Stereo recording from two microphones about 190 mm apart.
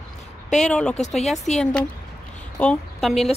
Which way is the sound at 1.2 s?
Centre (ahead or behind).